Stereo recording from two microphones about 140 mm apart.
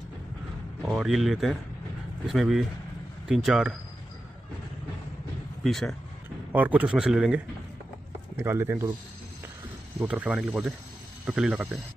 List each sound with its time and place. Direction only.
0.8 s speech: 5° right (ahead or behind)
5.6 s speech: centre (ahead or behind)
6.5 s a man's voice: 10° right (ahead or behind)
8.4 s a man's voice: 15° right (ahead or behind)
9.9 s a man's voice: 10° right (ahead or behind)